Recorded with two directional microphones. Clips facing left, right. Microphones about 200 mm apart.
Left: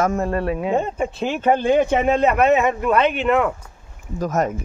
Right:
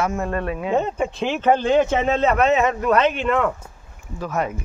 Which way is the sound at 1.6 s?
15° left (ahead or behind).